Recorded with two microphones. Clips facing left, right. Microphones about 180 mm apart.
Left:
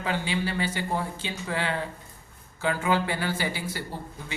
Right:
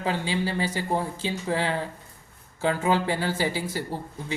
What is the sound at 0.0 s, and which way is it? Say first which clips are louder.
Speech: right 2 dB; 30° right (ahead or behind).